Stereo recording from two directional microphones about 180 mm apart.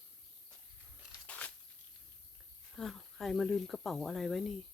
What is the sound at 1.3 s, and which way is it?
Tearing, 10° left (ahead or behind).